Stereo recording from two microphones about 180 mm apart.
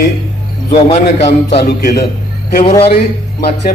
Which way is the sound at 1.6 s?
55° left (ahead or behind).